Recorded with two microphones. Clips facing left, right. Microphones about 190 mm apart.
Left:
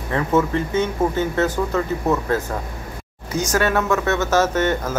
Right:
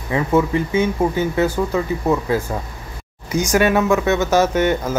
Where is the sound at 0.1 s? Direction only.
10° right (ahead or behind).